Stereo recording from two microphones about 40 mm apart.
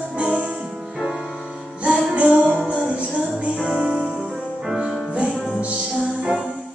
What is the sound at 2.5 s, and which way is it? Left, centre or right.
Music, right.